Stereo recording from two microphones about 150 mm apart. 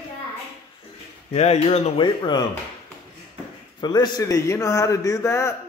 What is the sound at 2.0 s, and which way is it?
Speech, 30° left (ahead or behind).